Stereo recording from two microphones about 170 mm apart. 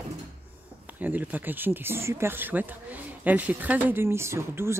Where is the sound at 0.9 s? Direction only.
10° right (ahead or behind).